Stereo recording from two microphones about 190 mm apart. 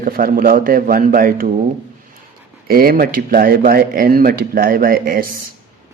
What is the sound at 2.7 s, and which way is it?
Speech, 50° right (ahead or behind).